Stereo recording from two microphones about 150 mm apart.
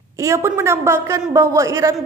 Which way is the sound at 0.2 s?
20° right (ahead or behind).